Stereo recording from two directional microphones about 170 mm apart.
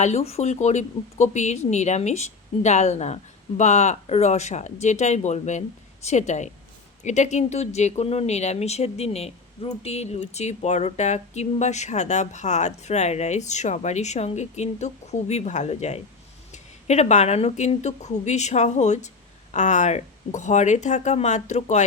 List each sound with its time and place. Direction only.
0.0 s speech: 40° left (ahead or behind)